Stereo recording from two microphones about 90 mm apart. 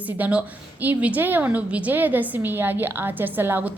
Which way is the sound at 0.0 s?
15° right (ahead or behind).